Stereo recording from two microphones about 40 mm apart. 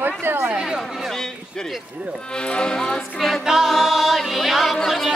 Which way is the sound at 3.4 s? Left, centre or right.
Centre.